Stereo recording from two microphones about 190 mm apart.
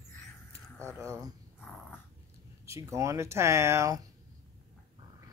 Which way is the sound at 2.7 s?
15° right (ahead or behind).